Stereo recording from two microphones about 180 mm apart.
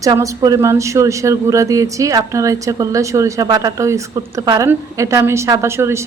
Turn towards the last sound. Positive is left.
turn(degrees=-15)  # may be behind; listen again after turning